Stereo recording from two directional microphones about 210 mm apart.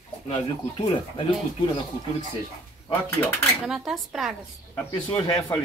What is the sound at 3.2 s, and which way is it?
Speech, centre (ahead or behind).